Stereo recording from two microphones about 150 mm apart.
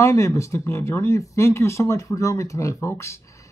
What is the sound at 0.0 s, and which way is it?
Speech, 20° left (ahead or behind).